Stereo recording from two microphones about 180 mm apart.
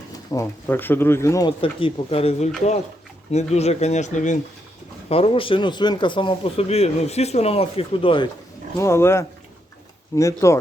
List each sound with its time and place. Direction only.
0.3 s speech: 15° left (ahead or behind)
1.5 s speech: 30° left (ahead or behind)
5.0 s speech: 30° left (ahead or behind)
8.8 s speech: 15° left (ahead or behind)